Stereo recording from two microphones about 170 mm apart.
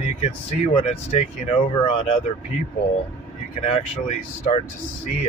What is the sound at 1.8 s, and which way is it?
Speech, 35° left (ahead or behind).